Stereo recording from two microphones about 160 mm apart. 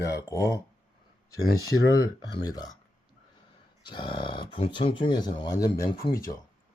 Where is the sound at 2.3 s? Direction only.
25° left (ahead or behind).